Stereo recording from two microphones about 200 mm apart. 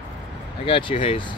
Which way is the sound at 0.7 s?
25° left (ahead or behind).